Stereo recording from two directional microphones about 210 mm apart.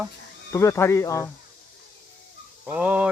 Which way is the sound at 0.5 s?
15° left (ahead or behind).